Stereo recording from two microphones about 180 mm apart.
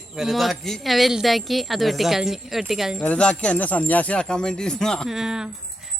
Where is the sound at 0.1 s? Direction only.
Centre (ahead or behind).